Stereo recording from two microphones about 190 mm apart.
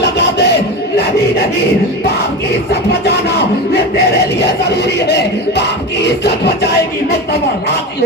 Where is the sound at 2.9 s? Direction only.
60° left (ahead or behind).